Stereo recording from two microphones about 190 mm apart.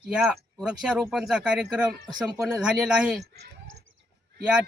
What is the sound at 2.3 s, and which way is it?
Speech, 15° right (ahead or behind).